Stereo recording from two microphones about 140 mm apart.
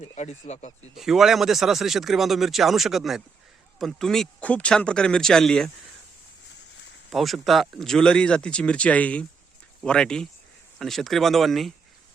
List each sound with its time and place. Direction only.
0.0 s speech: 50° left (ahead or behind)
0.9 s speech: centre (ahead or behind)
7.1 s speech: centre (ahead or behind)